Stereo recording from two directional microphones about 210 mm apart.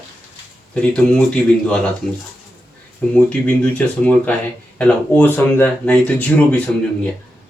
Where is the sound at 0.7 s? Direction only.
5° left (ahead or behind).